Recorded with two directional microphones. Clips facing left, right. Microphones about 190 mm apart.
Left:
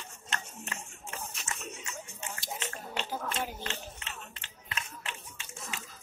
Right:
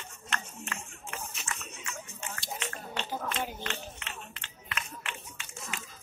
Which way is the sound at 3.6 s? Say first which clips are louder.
Right 1 dB; 30° left (ahead or behind).